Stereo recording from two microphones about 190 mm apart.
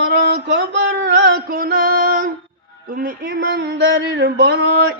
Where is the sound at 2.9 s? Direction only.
45° right (ahead or behind).